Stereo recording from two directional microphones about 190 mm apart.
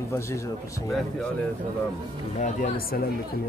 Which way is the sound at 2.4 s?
45° left (ahead or behind).